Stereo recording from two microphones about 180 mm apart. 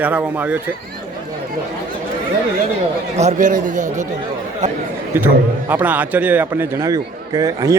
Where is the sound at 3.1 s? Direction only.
40° right (ahead or behind).